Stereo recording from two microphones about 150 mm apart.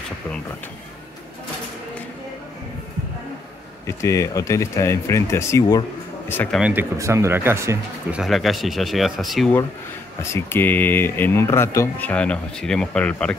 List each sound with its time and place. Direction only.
3.8 s speech: 20° left (ahead or behind)
6.3 s speech: 10° left (ahead or behind)
6.6 s speech: 15° right (ahead or behind)
8.2 s speech: centre (ahead or behind)
10.3 s speech: 15° left (ahead or behind)